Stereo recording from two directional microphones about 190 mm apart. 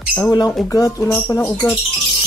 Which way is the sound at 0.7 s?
20° left (ahead or behind).